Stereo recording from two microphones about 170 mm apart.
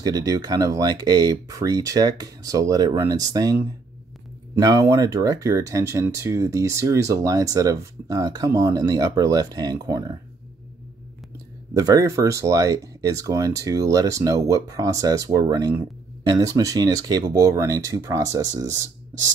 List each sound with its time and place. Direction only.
0.0 s speech: 20° right (ahead or behind)
4.6 s speech: 20° right (ahead or behind)
11.7 s speech: 20° right (ahead or behind)